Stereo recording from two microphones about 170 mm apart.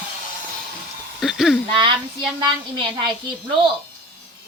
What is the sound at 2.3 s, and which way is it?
A woman's voice, 25° right (ahead or behind).